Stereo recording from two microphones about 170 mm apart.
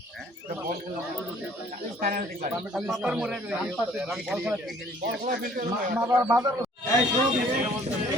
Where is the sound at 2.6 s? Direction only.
5° right (ahead or behind).